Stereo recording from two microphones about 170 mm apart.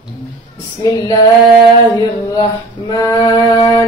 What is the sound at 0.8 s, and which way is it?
Music, 25° left (ahead or behind).